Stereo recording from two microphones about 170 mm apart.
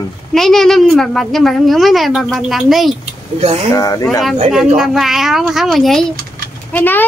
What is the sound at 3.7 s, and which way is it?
Speech, 20° left (ahead or behind).